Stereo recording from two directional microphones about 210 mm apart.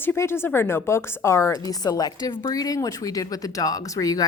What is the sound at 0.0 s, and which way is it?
A woman's voice, 10° left (ahead or behind).